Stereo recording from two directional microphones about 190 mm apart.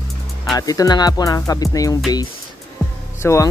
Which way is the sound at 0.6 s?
20° left (ahead or behind).